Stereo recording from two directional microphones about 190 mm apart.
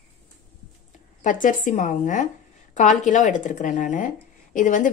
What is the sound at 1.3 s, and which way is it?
Speech, 45° left (ahead or behind).